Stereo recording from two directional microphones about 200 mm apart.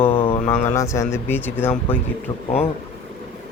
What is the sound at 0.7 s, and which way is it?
Speech, 15° left (ahead or behind).